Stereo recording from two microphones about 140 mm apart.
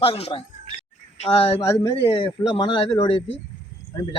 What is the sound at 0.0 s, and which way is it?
Speech, 45° left (ahead or behind).